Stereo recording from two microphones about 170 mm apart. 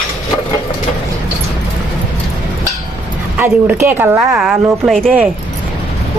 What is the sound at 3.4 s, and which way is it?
A woman's voice, 10° right (ahead or behind).